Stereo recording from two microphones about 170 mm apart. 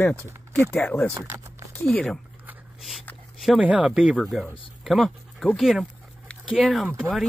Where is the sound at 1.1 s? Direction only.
20° right (ahead or behind).